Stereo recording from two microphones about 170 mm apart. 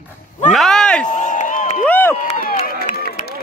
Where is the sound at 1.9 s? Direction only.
10° left (ahead or behind).